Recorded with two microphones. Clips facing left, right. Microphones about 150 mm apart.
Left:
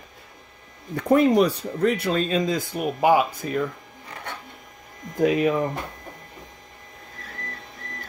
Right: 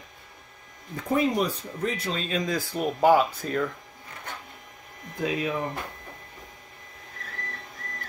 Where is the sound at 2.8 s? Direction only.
10° left (ahead or behind).